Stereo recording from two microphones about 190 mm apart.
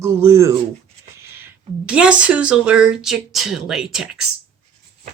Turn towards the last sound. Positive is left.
turn(degrees=-5)  # may be behind; listen again after turning